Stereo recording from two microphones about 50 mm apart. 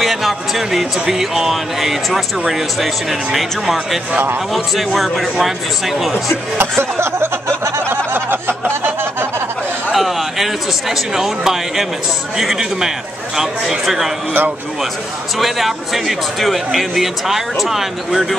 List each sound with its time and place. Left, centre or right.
0.0 s speech: centre
4.7 s speech: centre
6.8 s a sound: right
7.9 s a sound: right
9.9 s speech: centre
15.3 s speech: centre